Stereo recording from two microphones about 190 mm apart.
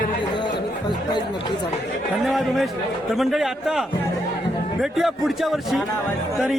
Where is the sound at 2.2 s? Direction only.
Centre (ahead or behind).